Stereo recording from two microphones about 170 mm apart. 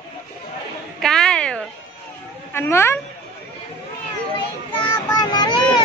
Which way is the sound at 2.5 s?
15° left (ahead or behind).